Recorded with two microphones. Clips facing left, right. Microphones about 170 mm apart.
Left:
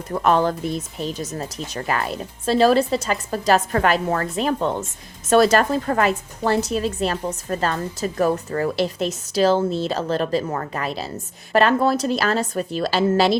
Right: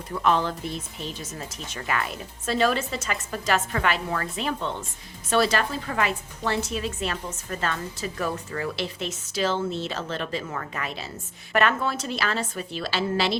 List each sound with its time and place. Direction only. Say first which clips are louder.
0.1 s a woman's voice: left 5 dB; 45° left (ahead or behind)